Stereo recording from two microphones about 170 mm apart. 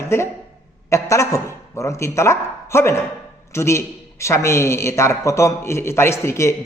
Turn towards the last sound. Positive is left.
turn(degrees=15)  # may be behind; listen again after turning